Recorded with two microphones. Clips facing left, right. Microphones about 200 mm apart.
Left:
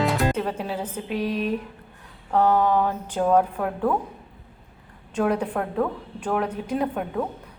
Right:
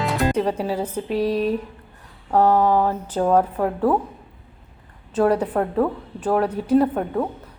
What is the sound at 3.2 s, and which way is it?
Speech, 5° right (ahead or behind).